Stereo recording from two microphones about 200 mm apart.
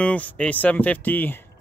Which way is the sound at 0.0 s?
5° left (ahead or behind).